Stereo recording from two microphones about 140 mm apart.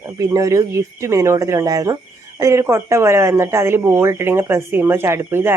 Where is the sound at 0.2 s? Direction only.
25° right (ahead or behind).